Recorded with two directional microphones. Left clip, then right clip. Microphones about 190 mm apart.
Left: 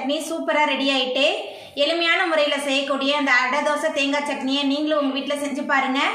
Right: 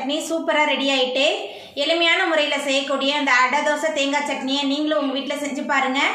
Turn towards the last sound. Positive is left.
turn(degrees=0)  # may be behind; listen again after turning